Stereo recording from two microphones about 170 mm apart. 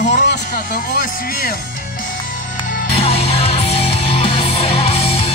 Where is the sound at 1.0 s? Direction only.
55° left (ahead or behind).